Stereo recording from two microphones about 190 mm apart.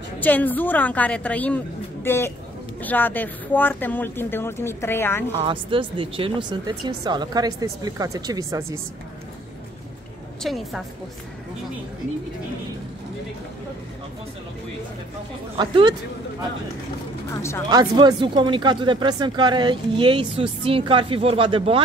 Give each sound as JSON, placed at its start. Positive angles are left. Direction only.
{"t": 0.2, "sound": "speech", "side_deg": 10}
{"t": 5.4, "sound": "speech", "side_deg": -25}
{"t": 10.4, "sound": "a woman's voice", "side_deg": 0}
{"t": 15.5, "sound": "speech", "side_deg": -25}
{"t": 17.3, "sound": "speech", "side_deg": 15}
{"t": 17.6, "sound": "speech", "side_deg": -20}